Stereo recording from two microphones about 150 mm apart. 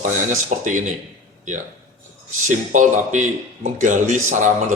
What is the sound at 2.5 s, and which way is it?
A man's voice, 55° right (ahead or behind).